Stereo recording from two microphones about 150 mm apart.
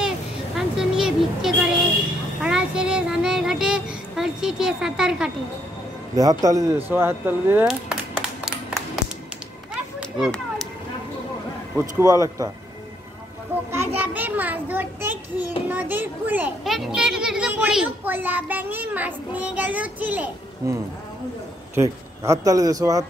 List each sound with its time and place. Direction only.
0.6 s vehicle: 5° right (ahead or behind)
2.4 s child singing: 5° right (ahead or behind)
6.1 s a child's voice: 25° right (ahead or behind)
7.6 s a sound: 5° right (ahead or behind)
12.0 s speech: 25° right (ahead or behind)
13.7 s a child's voice: 10° right (ahead or behind)
20.6 s speech: 20° right (ahead or behind)